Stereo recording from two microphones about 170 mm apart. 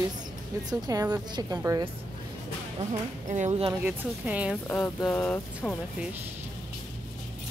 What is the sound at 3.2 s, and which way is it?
Speech, 45° right (ahead or behind).